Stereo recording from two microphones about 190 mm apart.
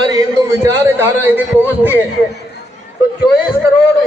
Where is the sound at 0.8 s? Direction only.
10° right (ahead or behind).